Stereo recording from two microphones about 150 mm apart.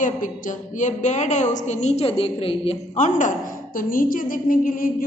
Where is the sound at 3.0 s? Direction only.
55° left (ahead or behind).